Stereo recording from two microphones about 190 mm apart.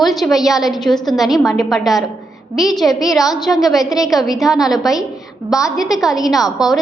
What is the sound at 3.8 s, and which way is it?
Speech, 20° left (ahead or behind).